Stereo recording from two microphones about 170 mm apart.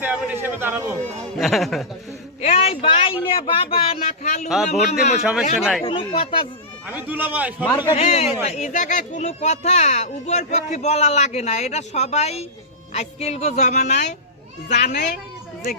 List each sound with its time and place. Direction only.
0.0 s a sound: 10° right (ahead or behind)
1.4 s speech: centre (ahead or behind)
2.4 s a sound: 35° left (ahead or behind)
3.2 s speech: 30° left (ahead or behind)
4.0 s speech: 45° left (ahead or behind)
4.4 s speech: centre (ahead or behind)
5.8 s speech: 30° left (ahead or behind)
6.8 s speech: 10° right (ahead or behind)
7.9 s speech: 35° left (ahead or behind)